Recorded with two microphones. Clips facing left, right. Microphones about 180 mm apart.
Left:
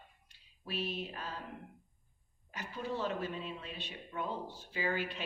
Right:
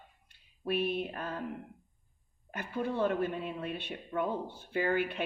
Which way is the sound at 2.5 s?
55° right (ahead or behind).